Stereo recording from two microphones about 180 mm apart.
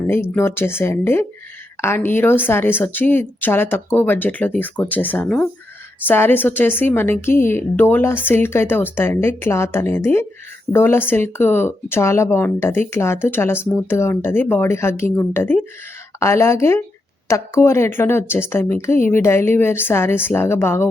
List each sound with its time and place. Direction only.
0.1 s a woman's voice: 10° left (ahead or behind)